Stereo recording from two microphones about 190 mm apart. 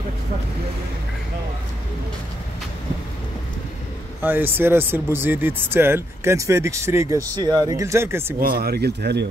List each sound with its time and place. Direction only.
4.2 s speech: 10° right (ahead or behind)
8.4 s speech: 50° right (ahead or behind)